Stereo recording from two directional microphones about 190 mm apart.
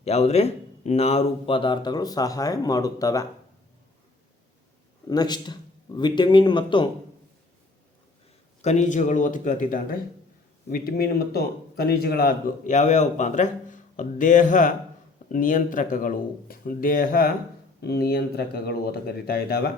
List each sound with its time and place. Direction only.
0.0 s speech: 35° left (ahead or behind); by 3.2 s 20° left (ahead or behind)
5.0 s speech: 20° left (ahead or behind)
8.6 s speech: 40° left (ahead or behind); by 12.3 s 55° left (ahead or behind)
12.6 s speech: 40° left (ahead or behind); by 19.7 s 55° left (ahead or behind)